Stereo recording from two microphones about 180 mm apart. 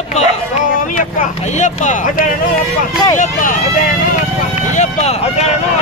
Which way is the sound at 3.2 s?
50° left (ahead or behind).